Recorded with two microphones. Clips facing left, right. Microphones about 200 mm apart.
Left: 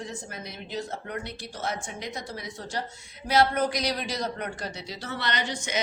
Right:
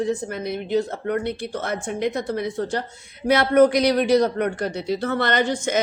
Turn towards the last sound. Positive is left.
turn(degrees=-50)  # may be behind; listen again after turning